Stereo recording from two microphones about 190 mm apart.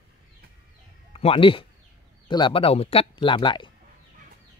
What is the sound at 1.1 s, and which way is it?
Speech, 30° left (ahead or behind).